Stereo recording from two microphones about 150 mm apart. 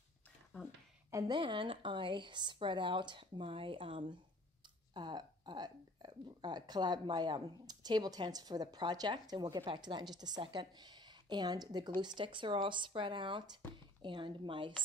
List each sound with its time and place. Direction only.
1.1 s speech: 30° right (ahead or behind)